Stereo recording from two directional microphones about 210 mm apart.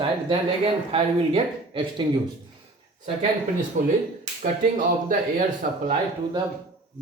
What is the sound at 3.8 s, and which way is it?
Speech, 35° right (ahead or behind).